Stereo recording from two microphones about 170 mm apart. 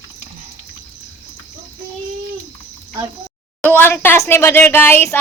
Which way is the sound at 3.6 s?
10° left (ahead or behind).